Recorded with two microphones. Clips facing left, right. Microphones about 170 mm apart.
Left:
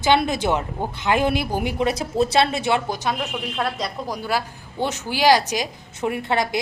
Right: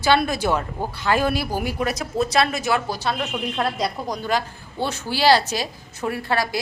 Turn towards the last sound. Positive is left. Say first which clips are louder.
# left 1 dB
turn(degrees=20)  # may be behind; listen again after turning